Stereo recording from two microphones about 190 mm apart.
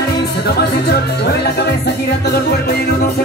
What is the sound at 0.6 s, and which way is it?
Music, 55° left (ahead or behind).